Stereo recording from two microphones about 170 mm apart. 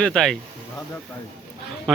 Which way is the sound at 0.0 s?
5° left (ahead or behind).